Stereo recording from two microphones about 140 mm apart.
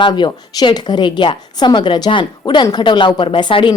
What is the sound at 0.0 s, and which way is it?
A woman's voice, 30° left (ahead or behind).